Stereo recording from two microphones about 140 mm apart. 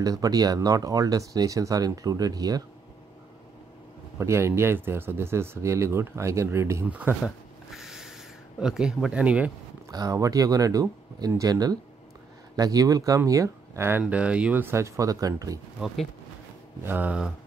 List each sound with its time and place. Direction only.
0.0 s speech: 25° right (ahead or behind)
4.2 s speech: 20° right (ahead or behind)
7.7 s snort: centre (ahead or behind)
8.5 s speech: 5° right (ahead or behind)
9.8 s speech: 25° right (ahead or behind)
16.8 s speech: 15° right (ahead or behind)